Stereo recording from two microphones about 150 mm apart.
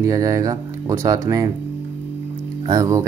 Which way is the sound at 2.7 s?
20° right (ahead or behind).